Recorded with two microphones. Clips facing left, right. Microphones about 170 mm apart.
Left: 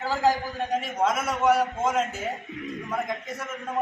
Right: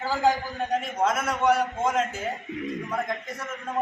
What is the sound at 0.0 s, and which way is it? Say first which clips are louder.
A man's voice: even; centre (ahead or behind).